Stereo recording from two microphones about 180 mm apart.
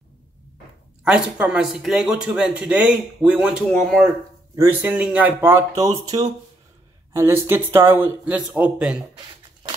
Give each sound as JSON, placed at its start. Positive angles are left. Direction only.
{"t": 1.0, "sound": "speech", "side_deg": -5}